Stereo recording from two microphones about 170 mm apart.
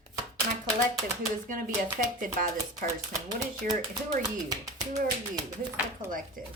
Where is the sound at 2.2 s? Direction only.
50° right (ahead or behind).